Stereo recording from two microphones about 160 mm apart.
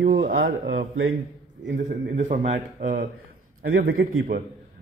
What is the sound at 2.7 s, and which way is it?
Speech, 65° right (ahead or behind).